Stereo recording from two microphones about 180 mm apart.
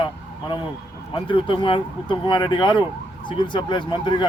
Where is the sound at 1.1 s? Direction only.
30° left (ahead or behind).